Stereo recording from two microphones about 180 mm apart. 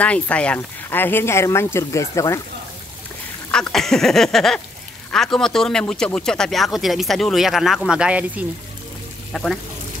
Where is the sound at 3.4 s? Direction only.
5° left (ahead or behind).